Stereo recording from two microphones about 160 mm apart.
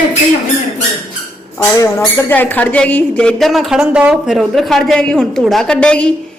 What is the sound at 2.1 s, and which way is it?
A woman's voice, 10° left (ahead or behind).